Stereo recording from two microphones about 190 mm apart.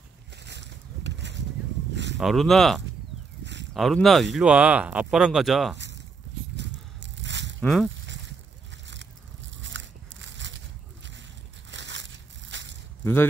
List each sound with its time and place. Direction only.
0.5 s a sound: 65° right (ahead or behind)
2.1 s speech: centre (ahead or behind)
6.5 s biting: 65° right (ahead or behind)
7.6 s speech: centre (ahead or behind)
9.6 s biting: 70° right (ahead or behind)
11.7 s crushing: 70° right (ahead or behind)
13.0 s speech: 10° left (ahead or behind)